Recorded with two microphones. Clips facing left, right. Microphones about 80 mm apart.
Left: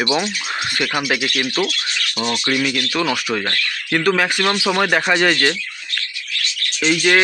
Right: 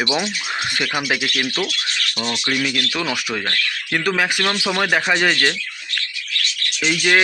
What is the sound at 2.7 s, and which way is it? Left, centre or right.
Speech, centre.